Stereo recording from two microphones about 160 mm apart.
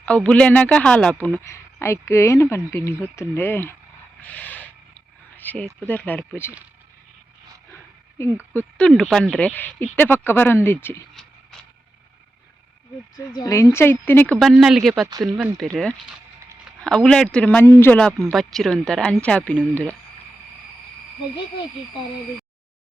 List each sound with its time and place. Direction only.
0.0 s speech: 5° left (ahead or behind)
4.2 s a sound: 10° left (ahead or behind)
5.9 s speech: 10° left (ahead or behind)
8.5 s speech: 5° left (ahead or behind)
13.1 s speech: 20° left (ahead or behind)
14.3 s speech: centre (ahead or behind)